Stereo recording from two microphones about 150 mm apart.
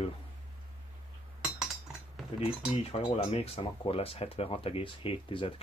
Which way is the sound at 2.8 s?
45° left (ahead or behind).